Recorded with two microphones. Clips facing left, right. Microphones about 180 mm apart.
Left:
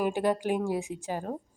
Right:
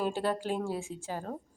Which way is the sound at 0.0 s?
15° left (ahead or behind).